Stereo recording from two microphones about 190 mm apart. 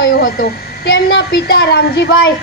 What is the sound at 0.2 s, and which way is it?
A woman's voice, 55° left (ahead or behind).